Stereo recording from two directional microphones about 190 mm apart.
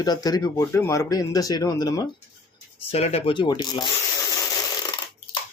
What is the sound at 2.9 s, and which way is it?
Speech, 35° left (ahead or behind).